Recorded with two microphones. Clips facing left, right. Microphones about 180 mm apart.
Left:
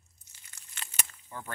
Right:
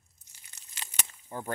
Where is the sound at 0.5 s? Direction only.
25° right (ahead or behind).